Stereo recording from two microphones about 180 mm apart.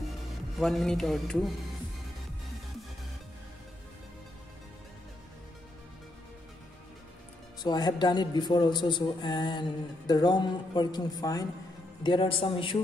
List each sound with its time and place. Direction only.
0.6 s speech: centre (ahead or behind)
7.6 s speech: 20° left (ahead or behind)